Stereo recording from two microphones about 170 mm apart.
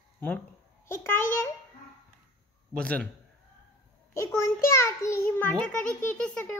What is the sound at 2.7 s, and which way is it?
Speech, 5° left (ahead or behind).